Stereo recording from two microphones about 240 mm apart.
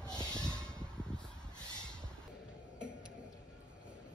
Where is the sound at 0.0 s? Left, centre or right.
Centre.